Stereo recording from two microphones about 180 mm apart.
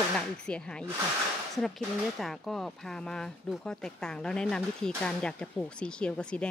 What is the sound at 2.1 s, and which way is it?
Speech, centre (ahead or behind).